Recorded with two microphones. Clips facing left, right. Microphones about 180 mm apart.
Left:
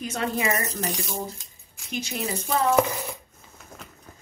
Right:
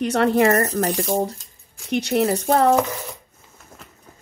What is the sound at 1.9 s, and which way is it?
Speech, 70° right (ahead or behind).